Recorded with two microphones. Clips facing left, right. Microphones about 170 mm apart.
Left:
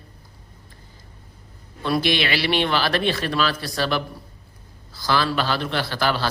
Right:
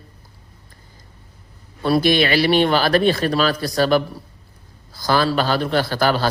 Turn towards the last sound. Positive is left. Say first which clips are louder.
# right 5 dB
turn(degrees=-45)  # may be behind; listen again after turning